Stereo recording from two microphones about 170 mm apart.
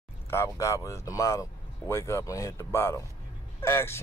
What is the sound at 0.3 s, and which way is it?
Speech, 15° left (ahead or behind).